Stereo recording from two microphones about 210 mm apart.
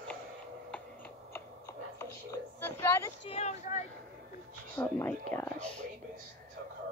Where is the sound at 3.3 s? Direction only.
30° left (ahead or behind).